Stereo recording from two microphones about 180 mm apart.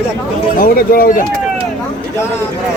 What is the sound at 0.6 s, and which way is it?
Speech, 55° left (ahead or behind).